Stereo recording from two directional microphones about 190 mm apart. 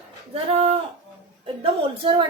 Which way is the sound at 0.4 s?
30° right (ahead or behind).